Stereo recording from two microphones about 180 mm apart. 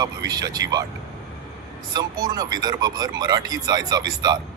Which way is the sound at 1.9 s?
20° right (ahead or behind).